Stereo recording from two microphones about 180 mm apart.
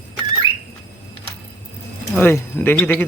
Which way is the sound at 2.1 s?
10° left (ahead or behind).